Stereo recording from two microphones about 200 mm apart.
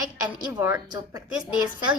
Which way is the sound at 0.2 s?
15° right (ahead or behind).